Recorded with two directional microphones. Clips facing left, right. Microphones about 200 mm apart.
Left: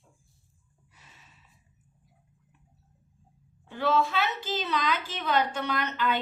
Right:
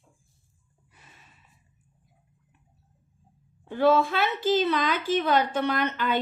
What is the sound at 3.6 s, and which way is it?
A woman's voice, 50° right (ahead or behind).